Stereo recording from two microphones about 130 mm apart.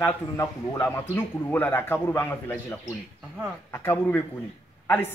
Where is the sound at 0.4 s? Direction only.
20° left (ahead or behind).